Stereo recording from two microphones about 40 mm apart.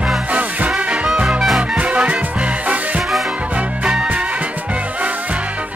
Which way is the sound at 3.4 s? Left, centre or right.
Right.